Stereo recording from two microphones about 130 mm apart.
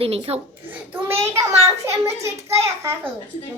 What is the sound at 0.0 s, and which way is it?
Speech, 50° right (ahead or behind).